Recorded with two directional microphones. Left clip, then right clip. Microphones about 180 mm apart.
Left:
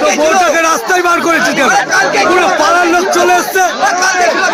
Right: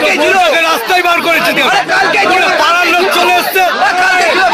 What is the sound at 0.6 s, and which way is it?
Speech, 55° left (ahead or behind).